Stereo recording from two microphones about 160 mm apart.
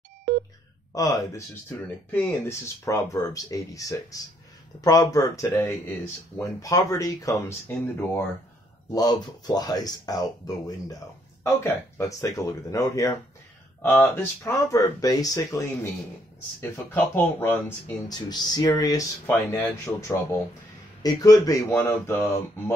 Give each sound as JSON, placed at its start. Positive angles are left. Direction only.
{"t": 0.9, "sound": "speech", "side_deg": 20}
{"t": 8.9, "sound": "speech", "side_deg": 25}
{"t": 18.0, "sound": "speech", "side_deg": 25}